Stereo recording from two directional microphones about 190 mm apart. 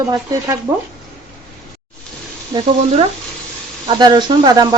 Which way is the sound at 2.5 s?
20° right (ahead or behind).